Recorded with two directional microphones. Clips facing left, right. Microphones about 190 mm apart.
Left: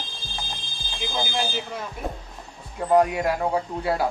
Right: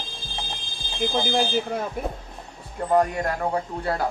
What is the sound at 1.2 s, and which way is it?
Speech, 50° right (ahead or behind).